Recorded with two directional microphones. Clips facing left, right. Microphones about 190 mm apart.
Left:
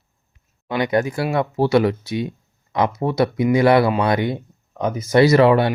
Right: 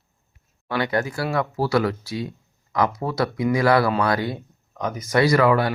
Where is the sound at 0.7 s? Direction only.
20° left (ahead or behind).